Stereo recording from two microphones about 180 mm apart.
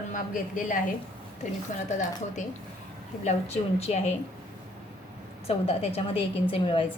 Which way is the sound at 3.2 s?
35° left (ahead or behind).